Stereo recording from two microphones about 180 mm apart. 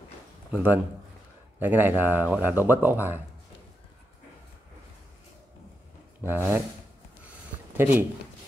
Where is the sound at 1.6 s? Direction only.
10° right (ahead or behind).